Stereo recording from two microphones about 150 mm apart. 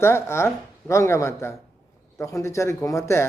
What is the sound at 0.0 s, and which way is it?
A man's voice, 15° left (ahead or behind).